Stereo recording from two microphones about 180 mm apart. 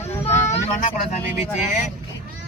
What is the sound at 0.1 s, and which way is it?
Vehicle, 15° left (ahead or behind).